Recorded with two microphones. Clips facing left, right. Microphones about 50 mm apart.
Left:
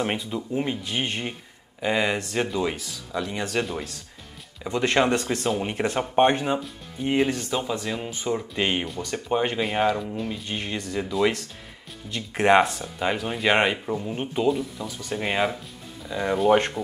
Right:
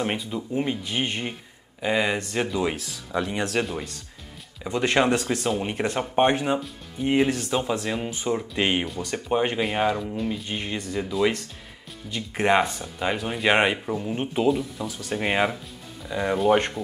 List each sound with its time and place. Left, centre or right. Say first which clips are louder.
0.0 s speech: even; centre
3.1 s speech: right 3 dB; centre
3.4 s speech: right 1 dB; centre